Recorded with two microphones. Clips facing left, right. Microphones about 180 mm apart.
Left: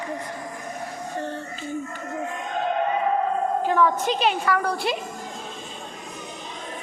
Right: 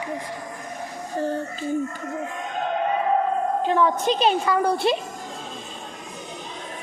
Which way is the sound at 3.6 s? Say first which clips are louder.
Right 1 dB; 25° right (ahead or behind).